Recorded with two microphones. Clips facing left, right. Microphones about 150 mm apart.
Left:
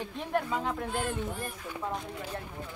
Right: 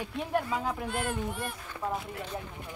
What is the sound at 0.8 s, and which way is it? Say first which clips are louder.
Speech: even; 70° right (ahead or behind).